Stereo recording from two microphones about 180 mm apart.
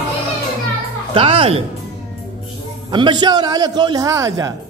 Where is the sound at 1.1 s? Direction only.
30° right (ahead or behind).